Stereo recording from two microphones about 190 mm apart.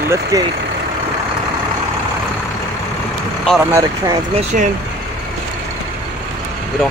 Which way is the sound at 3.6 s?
15° right (ahead or behind).